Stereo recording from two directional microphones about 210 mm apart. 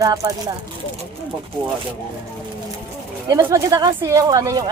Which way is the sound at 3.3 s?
15° right (ahead or behind).